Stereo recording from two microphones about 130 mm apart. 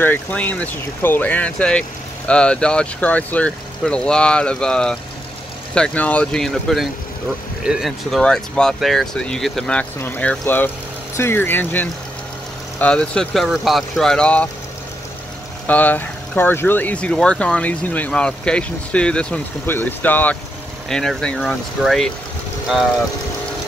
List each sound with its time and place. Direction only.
0.0 s speech: 15° left (ahead or behind)
9.9 s speech: 15° left (ahead or behind)
15.6 s speech: 15° left (ahead or behind)